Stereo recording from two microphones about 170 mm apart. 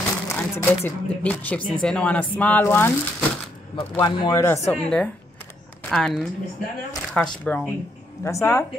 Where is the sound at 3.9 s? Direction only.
20° left (ahead or behind).